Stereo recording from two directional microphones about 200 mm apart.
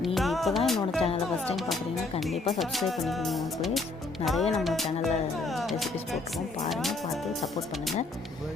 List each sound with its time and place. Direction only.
0.0 s speech: centre (ahead or behind)
1.0 s speech: 30° left (ahead or behind)
1.5 s speech: centre (ahead or behind)